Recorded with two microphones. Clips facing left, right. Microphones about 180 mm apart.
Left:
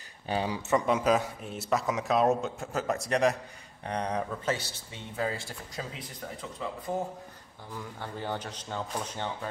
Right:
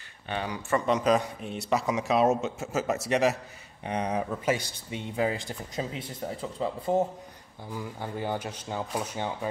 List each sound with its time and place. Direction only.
0.3 s speech: 30° left (ahead or behind)
0.8 s a man's voice: 5° left (ahead or behind); by 6.7 s 30° right (ahead or behind)
7.7 s speech: 10° right (ahead or behind)